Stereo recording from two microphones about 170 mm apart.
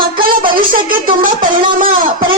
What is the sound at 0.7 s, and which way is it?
Music, 55° right (ahead or behind).